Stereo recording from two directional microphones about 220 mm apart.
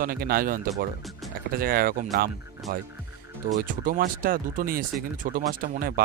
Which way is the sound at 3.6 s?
35° right (ahead or behind).